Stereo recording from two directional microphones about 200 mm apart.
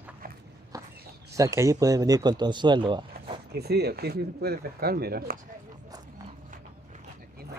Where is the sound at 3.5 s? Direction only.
55° right (ahead or behind).